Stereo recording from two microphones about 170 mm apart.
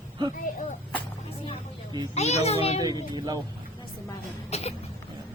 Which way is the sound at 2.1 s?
40° left (ahead or behind).